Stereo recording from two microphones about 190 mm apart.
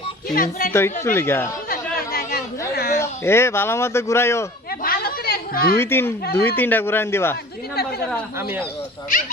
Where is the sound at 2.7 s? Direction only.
55° left (ahead or behind).